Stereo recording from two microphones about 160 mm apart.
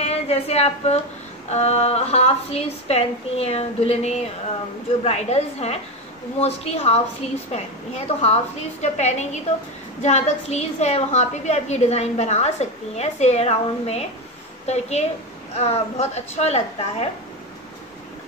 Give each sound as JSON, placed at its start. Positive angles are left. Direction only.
{"t": 0.0, "sound": "a woman's voice", "side_deg": 40}